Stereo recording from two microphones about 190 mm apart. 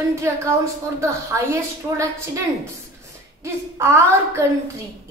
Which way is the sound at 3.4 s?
15° right (ahead or behind).